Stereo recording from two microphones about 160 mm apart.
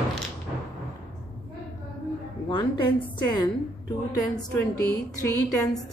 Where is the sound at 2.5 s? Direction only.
25° left (ahead or behind).